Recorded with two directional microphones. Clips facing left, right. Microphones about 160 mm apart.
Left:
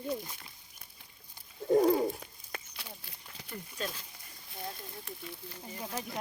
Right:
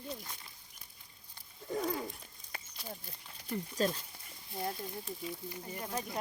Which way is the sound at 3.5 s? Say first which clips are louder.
Right 7 dB; 35° right (ahead or behind).